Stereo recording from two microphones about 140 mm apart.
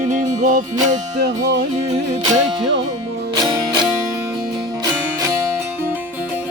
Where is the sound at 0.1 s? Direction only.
60° right (ahead or behind).